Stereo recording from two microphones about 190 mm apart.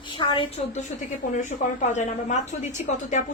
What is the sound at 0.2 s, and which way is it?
Speech, 25° left (ahead or behind).